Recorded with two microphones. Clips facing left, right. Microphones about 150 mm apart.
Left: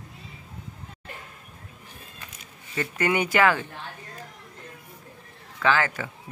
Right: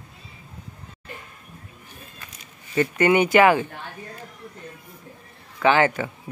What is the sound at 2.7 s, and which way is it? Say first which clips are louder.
Speech: right 7 dB; 25° right (ahead or behind).